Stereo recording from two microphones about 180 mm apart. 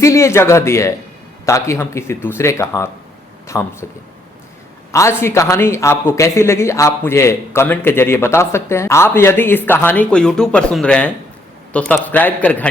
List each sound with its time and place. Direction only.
0.0 s a man's voice: 15° left (ahead or behind)
4.9 s a man's voice: 15° left (ahead or behind)